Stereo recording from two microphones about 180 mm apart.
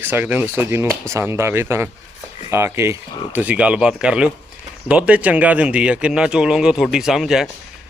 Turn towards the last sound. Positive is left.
turn(degrees=0)  # may be behind; listen again after turning